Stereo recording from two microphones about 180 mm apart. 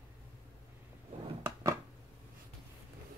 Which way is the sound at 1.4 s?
20° right (ahead or behind).